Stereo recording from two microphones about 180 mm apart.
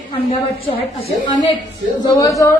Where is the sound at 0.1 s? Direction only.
30° left (ahead or behind).